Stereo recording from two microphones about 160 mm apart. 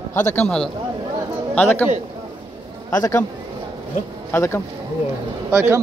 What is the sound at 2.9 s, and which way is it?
Speech, 20° left (ahead or behind).